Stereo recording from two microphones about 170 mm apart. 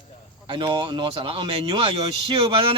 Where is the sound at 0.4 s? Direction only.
30° right (ahead or behind).